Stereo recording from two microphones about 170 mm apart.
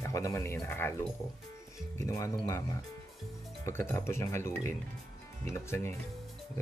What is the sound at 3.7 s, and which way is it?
Speech, 15° left (ahead or behind).